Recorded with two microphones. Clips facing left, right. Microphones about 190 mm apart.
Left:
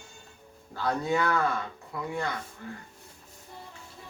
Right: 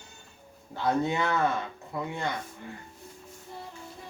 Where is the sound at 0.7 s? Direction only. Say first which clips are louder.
Right 1 dB; 20° right (ahead or behind).